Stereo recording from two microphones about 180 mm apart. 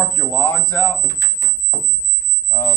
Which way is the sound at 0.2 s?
10° left (ahead or behind).